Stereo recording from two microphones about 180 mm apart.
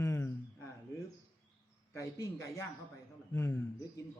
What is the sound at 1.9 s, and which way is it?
A man's voice, 15° left (ahead or behind).